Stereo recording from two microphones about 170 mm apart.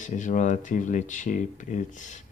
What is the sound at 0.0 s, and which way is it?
Speech, 50° left (ahead or behind).